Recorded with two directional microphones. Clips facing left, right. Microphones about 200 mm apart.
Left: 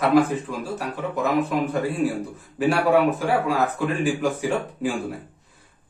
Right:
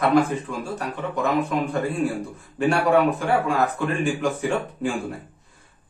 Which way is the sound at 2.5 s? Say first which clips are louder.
Even; 5° left (ahead or behind).